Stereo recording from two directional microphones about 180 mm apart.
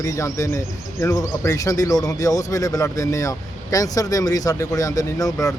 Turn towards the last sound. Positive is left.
turn(degrees=20)  # may be behind; listen again after turning